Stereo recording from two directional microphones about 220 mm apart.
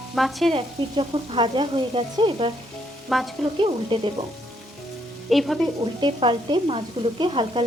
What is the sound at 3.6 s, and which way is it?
Speech, 20° right (ahead or behind).